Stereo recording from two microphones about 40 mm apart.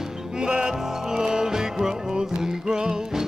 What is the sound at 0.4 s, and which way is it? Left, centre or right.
Music, centre.